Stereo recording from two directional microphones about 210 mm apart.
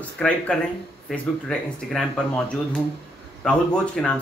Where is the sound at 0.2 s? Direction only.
5° left (ahead or behind).